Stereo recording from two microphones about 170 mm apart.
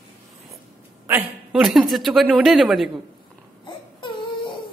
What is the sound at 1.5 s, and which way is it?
Speech, centre (ahead or behind).